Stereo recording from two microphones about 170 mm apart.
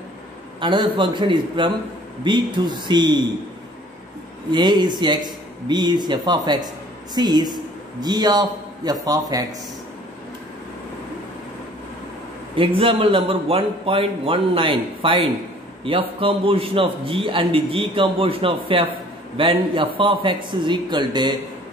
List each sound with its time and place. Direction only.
0.6 s a man's voice: 30° right (ahead or behind)
4.5 s a man's voice: 25° right (ahead or behind)
12.5 s a man's voice: 35° right (ahead or behind)